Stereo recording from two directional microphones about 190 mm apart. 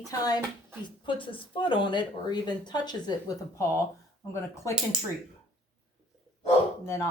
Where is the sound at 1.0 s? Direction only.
25° left (ahead or behind).